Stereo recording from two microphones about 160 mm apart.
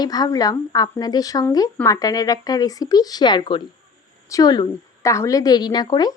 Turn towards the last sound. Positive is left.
turn(degrees=25)  # may be behind; listen again after turning